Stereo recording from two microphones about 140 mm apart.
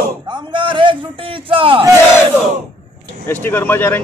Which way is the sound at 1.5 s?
40° right (ahead or behind).